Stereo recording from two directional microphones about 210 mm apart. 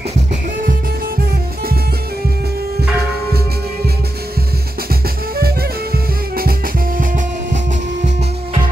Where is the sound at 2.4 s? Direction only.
50° right (ahead or behind).